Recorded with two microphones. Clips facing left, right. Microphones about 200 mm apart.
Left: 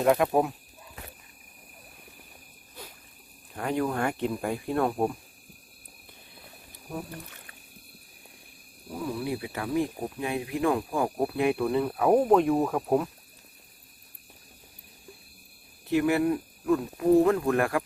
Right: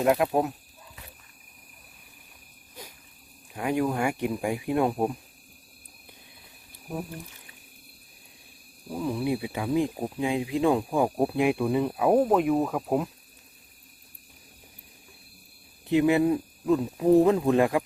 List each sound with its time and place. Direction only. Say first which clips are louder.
0.0 s speech: even; 5° right (ahead or behind)
3.5 s speech: right 2 dB; 10° right (ahead or behind)
9.0 s speech: right 4 dB; 20° right (ahead or behind)
15.9 s speech: right 3 dB; 20° right (ahead or behind)